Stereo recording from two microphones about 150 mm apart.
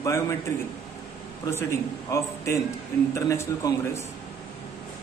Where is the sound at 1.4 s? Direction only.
15° left (ahead or behind).